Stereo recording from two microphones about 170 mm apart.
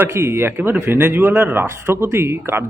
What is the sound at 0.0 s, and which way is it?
Speech, 15° right (ahead or behind).